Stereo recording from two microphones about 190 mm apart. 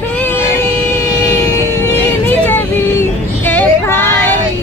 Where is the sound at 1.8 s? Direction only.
10° left (ahead or behind).